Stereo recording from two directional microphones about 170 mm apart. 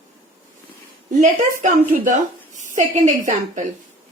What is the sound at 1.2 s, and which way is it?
A woman's voice, 50° right (ahead or behind).